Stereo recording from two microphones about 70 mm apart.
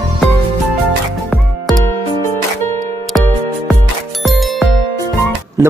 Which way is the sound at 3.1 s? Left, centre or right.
Centre.